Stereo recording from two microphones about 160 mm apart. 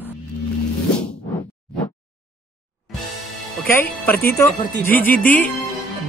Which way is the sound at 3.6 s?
10° left (ahead or behind).